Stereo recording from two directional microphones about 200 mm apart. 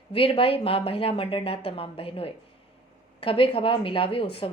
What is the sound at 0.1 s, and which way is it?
Speech, 25° left (ahead or behind).